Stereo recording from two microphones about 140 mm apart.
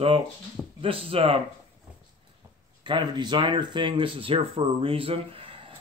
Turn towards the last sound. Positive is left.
turn(degrees=-40)  # may be behind; listen again after turning